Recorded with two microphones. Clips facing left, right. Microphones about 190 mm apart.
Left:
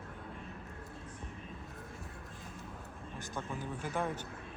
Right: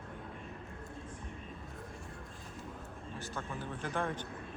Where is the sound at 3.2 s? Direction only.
10° left (ahead or behind).